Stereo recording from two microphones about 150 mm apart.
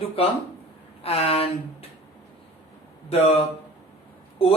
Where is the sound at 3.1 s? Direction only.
45° left (ahead or behind).